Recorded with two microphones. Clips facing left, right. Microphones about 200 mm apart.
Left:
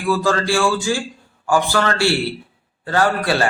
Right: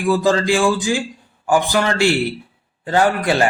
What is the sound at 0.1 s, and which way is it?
A man's voice, 15° right (ahead or behind).